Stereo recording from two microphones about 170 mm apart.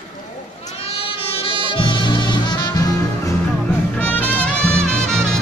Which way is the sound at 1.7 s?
30° left (ahead or behind).